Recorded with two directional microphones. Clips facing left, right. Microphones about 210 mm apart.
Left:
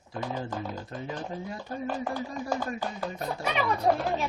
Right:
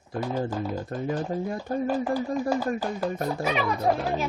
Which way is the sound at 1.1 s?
50° right (ahead or behind).